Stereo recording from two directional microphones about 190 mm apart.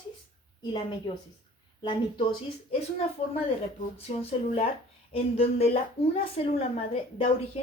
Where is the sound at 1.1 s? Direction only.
30° left (ahead or behind).